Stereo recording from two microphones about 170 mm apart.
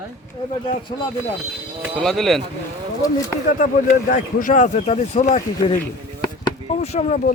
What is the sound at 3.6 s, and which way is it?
Speech, 50° left (ahead or behind).